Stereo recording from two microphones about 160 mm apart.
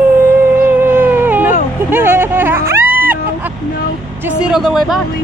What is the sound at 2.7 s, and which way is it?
Music, 10° right (ahead or behind).